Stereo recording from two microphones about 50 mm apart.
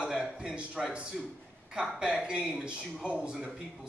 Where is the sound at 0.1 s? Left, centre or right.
Centre.